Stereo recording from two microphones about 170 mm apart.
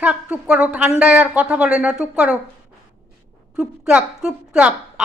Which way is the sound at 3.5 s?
5° right (ahead or behind).